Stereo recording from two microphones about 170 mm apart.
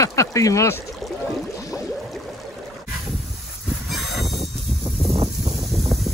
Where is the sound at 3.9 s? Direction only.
Centre (ahead or behind).